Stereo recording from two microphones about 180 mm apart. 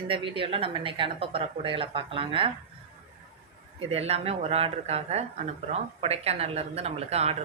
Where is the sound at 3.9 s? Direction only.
35° right (ahead or behind).